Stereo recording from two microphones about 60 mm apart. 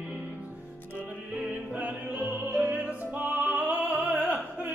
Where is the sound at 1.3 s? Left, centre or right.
Right.